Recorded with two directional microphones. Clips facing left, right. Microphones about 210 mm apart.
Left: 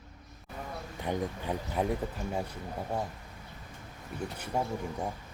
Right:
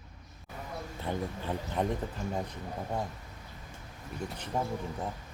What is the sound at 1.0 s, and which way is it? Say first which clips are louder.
Speech: left 2 dB; 15° left (ahead or behind).